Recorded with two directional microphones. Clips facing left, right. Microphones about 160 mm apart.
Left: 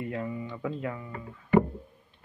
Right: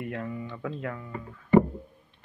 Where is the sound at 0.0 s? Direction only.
15° left (ahead or behind).